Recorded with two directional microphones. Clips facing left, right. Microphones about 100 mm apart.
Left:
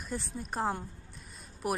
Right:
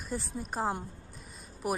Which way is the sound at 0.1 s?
Centre (ahead or behind).